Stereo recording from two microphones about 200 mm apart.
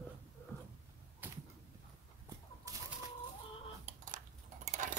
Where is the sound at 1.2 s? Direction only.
10° right (ahead or behind).